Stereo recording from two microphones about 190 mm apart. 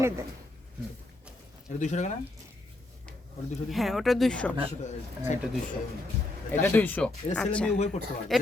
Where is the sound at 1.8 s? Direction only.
40° left (ahead or behind).